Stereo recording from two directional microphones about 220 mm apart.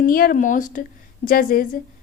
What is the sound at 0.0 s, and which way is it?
A woman's voice, 40° left (ahead or behind).